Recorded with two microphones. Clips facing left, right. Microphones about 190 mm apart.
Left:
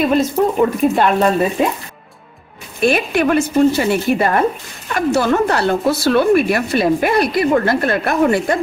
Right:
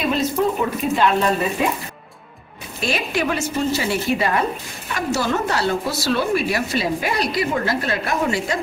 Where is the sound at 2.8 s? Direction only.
55° left (ahead or behind).